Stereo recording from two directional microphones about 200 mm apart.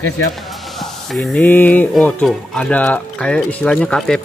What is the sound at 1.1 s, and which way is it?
Speech, 5° left (ahead or behind).